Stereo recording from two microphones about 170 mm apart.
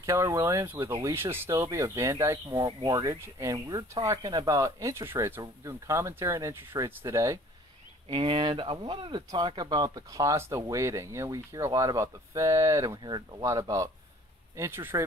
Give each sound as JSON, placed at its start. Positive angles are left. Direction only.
{"t": 0.0, "sound": "speech", "side_deg": -15}
{"t": 8.1, "sound": "speech", "side_deg": -30}